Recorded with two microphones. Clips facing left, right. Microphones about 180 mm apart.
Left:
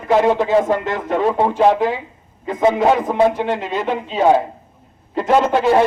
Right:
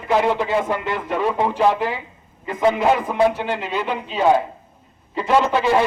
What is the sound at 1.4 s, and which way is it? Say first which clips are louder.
Speech: left 3 dB; 45° left (ahead or behind).